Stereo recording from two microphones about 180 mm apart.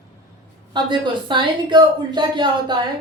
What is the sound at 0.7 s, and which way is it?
A woman's voice, 25° right (ahead or behind).